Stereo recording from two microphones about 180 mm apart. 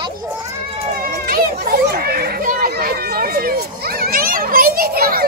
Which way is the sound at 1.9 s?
55° right (ahead or behind).